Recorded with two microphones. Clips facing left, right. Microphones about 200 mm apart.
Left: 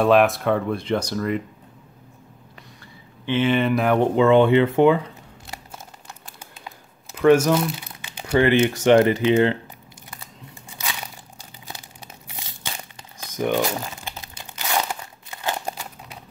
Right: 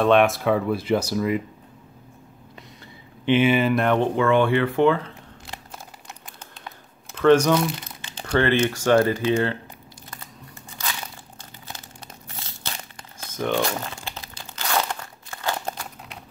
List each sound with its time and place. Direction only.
0.0 s speech: centre (ahead or behind)
3.3 s speech: 10° right (ahead or behind); by 4.1 s 5° left (ahead or behind)
4.1 s speech: 20° left (ahead or behind)
7.2 s speech: 10° left (ahead or behind)
12.3 s crumpling: 15° left (ahead or behind)
13.6 s speech: 5° left (ahead or behind)
14.0 s crunch: 15° left (ahead or behind)
15.7 s a sound: 5° left (ahead or behind)